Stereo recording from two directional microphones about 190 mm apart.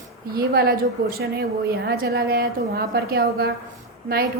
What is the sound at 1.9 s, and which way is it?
A woman's voice, 60° right (ahead or behind).